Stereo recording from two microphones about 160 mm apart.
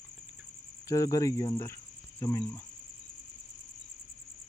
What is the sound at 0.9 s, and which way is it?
Speech, 20° left (ahead or behind).